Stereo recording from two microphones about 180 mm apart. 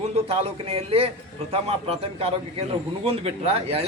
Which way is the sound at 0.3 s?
30° right (ahead or behind).